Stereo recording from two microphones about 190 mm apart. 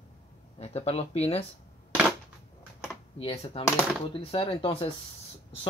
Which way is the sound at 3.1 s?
30° left (ahead or behind).